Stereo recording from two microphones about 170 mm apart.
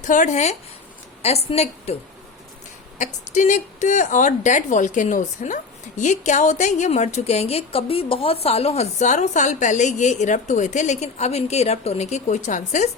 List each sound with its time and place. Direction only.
0.0 s a woman's voice: 50° left (ahead or behind)
3.0 s a woman's voice: 45° left (ahead or behind)